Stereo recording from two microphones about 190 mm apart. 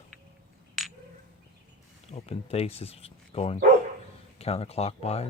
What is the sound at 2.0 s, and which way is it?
Speech, 30° left (ahead or behind).